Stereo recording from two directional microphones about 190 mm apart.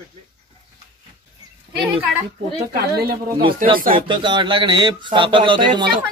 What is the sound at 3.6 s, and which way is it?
Speech, 45° right (ahead or behind).